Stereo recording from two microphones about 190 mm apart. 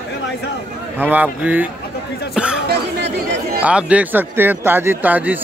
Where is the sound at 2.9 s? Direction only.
65° right (ahead or behind).